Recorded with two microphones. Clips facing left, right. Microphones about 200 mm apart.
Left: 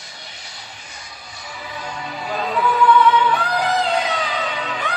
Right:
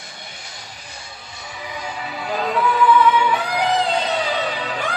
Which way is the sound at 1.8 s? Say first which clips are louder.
Even; centre (ahead or behind).